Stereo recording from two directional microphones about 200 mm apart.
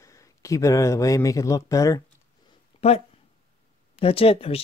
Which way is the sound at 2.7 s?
30° left (ahead or behind).